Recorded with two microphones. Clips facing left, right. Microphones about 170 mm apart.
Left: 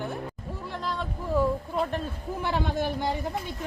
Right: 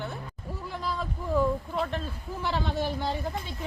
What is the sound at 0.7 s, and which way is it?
Speech, 5° right (ahead or behind).